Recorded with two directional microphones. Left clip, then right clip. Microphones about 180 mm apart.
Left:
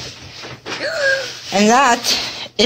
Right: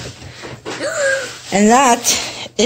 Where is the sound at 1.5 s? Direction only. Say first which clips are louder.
Right 1 dB; 35° right (ahead or behind).